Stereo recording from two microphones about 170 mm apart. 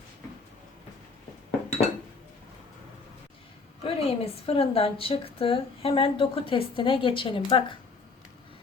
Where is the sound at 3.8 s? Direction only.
35° left (ahead or behind).